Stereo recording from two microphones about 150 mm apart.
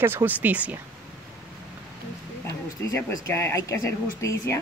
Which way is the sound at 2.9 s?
20° left (ahead or behind).